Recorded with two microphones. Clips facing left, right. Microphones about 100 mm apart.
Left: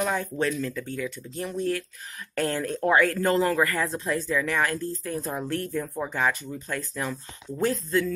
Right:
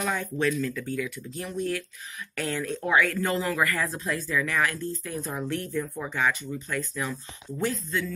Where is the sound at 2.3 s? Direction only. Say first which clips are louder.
Left 4 dB; 40° left (ahead or behind).